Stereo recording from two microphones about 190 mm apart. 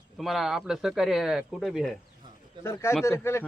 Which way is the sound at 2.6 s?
15° left (ahead or behind).